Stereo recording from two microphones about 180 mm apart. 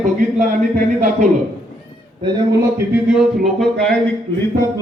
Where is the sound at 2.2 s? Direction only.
20° right (ahead or behind).